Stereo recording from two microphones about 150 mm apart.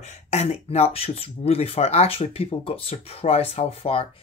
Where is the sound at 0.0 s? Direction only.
50° left (ahead or behind).